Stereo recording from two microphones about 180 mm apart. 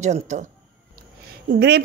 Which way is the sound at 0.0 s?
40° right (ahead or behind).